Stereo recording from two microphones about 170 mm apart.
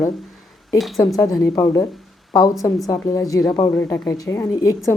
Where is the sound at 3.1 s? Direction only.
20° left (ahead or behind).